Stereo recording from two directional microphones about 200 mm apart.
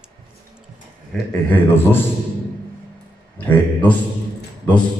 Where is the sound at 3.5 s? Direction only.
5° left (ahead or behind).